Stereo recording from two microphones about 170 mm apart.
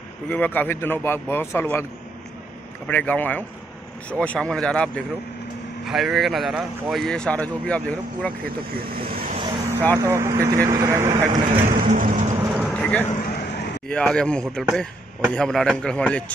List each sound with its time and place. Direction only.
0.3 s speech: 10° left (ahead or behind)
2.9 s a man's voice: 10° left (ahead or behind)
8.5 s speech: 60° right (ahead or behind)
9.9 s speech: 15° right (ahead or behind)
11.6 s vehicle: 50° right (ahead or behind)
12.4 s vehicle: centre (ahead or behind)
13.2 s a sound: 65° left (ahead or behind)
13.8 s a man's voice: 5° left (ahead or behind)